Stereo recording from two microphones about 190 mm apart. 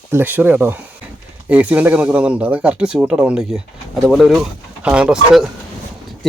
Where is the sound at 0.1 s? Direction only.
10° right (ahead or behind).